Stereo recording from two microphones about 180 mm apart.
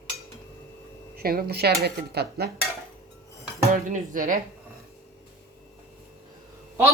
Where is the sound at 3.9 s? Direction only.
45° right (ahead or behind).